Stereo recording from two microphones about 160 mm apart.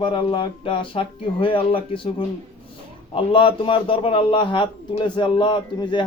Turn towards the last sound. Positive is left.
turn(degrees=30)  # may be behind; listen again after turning